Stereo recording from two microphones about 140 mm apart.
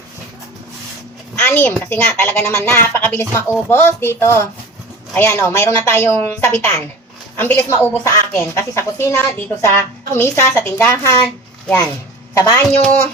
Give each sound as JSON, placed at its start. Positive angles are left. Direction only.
{"t": 1.4, "sound": "a woman's voice", "side_deg": 10}
{"t": 12.3, "sound": "a woman's voice", "side_deg": 20}